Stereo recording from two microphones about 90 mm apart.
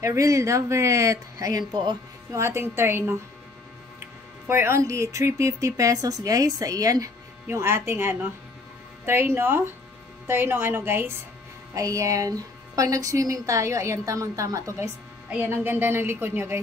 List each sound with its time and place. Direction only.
0.0 s a woman's voice: 35° right (ahead or behind)
4.5 s a woman's voice: 30° right (ahead or behind)
7.5 s speech: 30° right (ahead or behind)
11.7 s a woman's voice: 35° right (ahead or behind)